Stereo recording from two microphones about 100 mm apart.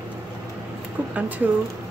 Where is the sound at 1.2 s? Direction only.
15° right (ahead or behind).